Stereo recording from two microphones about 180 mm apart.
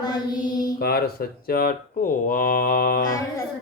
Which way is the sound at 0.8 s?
60° left (ahead or behind).